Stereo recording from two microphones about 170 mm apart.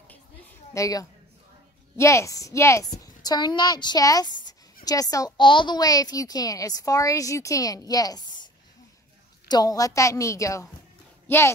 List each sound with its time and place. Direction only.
0.1 s a sound: 15° left (ahead or behind)
2.0 s a woman's voice: 15° left (ahead or behind)
9.5 s a woman's voice: 20° left (ahead or behind)